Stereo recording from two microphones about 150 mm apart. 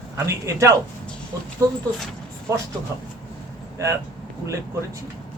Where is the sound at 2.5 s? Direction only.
20° right (ahead or behind).